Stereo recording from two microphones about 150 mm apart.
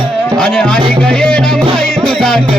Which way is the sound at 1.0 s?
5° left (ahead or behind).